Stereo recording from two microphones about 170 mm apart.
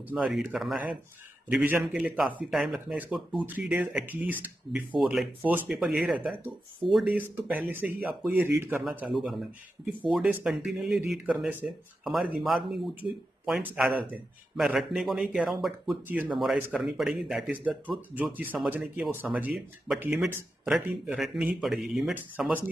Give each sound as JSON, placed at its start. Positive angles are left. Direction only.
{"t": 0.1, "sound": "speech", "side_deg": -5}